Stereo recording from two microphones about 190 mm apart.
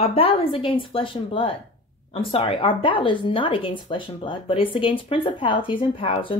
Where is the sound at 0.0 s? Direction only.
30° left (ahead or behind).